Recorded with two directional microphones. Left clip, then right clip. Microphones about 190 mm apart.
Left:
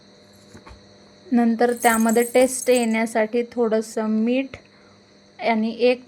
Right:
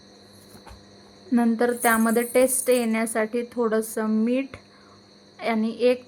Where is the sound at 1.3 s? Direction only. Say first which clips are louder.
Left 3 dB; 5° left (ahead or behind).